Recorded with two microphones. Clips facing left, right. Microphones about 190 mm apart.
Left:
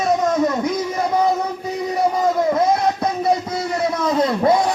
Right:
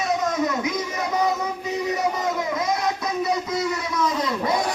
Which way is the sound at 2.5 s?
60° left (ahead or behind).